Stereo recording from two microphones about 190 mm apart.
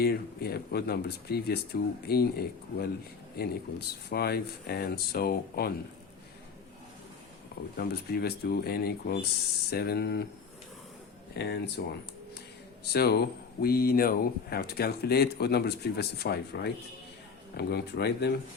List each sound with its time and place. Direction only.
0.0 s speech: 55° left (ahead or behind)
7.8 s speech: 55° left (ahead or behind)
11.3 s speech: 60° left (ahead or behind)
12.9 s speech: 55° left (ahead or behind)